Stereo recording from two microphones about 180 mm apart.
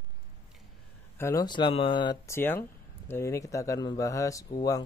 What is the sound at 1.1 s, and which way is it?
Speech, 15° left (ahead or behind).